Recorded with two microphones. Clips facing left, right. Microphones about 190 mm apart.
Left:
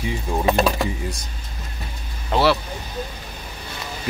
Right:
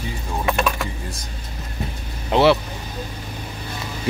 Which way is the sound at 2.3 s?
20° right (ahead or behind).